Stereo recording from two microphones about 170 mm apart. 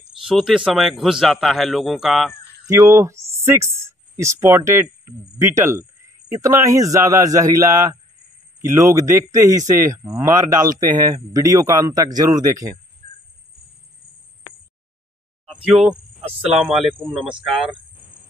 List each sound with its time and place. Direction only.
0.3 s speech: centre (ahead or behind)
2.7 s speech: 20° right (ahead or behind)
15.4 s speech: centre (ahead or behind)